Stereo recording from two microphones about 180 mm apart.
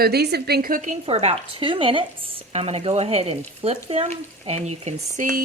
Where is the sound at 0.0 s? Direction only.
65° right (ahead or behind); by 2.0 s 30° right (ahead or behind).